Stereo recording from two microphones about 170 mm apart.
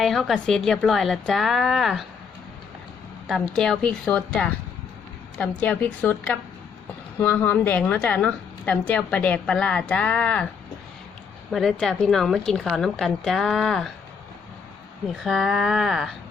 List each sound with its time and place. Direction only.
0.0 s speech: centre (ahead or behind)
3.2 s a woman's voice: centre (ahead or behind)
11.5 s speech: 5° left (ahead or behind)
15.2 s speech: centre (ahead or behind)